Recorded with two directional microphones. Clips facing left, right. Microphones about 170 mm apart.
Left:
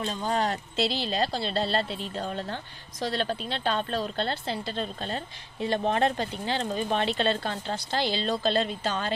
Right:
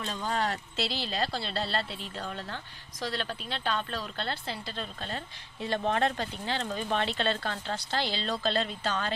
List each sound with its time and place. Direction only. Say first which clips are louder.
0.0 s speech: left 4 dB; 20° left (ahead or behind)